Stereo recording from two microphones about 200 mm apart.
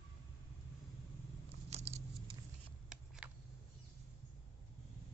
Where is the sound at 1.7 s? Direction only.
30° right (ahead or behind).